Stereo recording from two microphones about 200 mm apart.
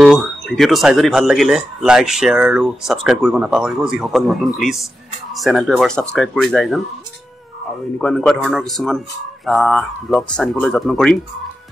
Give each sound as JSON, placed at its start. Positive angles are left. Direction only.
{"t": 0.0, "sound": "speech", "side_deg": 0}
{"t": 8.0, "sound": "speech", "side_deg": 5}